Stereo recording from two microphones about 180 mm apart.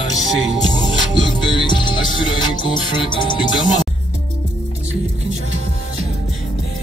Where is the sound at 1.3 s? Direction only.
25° left (ahead or behind).